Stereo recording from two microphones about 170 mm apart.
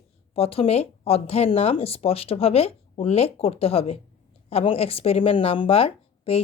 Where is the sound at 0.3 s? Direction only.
35° left (ahead or behind).